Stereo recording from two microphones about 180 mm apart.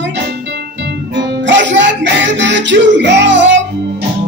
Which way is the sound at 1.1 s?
80° right.